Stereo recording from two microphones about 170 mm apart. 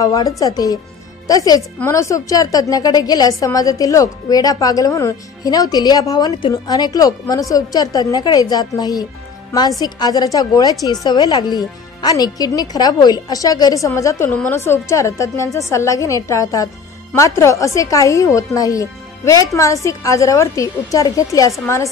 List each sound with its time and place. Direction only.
0.0 s a woman's voice: 20° left (ahead or behind)